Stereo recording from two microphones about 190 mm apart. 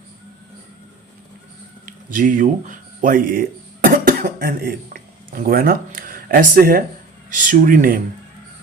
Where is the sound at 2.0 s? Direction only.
45° right (ahead or behind).